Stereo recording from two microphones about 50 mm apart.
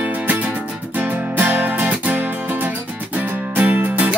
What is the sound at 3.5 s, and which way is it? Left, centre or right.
Music, right.